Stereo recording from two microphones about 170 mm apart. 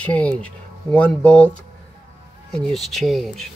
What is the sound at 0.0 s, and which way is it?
Speech, 10° left (ahead or behind).